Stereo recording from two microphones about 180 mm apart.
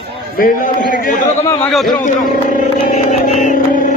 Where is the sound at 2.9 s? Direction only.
40° left (ahead or behind).